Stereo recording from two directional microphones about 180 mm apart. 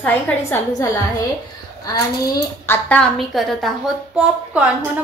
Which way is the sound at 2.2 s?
15° left (ahead or behind).